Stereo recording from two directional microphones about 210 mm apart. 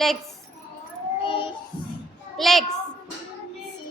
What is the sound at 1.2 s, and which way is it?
Child singing, 20° left (ahead or behind).